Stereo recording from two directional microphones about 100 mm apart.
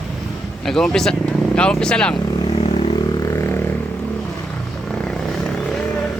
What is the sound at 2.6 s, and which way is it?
Vehicle, 80° left.